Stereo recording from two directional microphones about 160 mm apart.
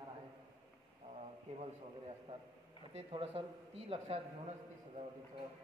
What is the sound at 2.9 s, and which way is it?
Speech, 40° right (ahead or behind).